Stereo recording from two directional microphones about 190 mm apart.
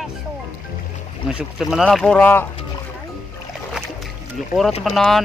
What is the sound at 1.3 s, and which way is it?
Speech, 5° right (ahead or behind).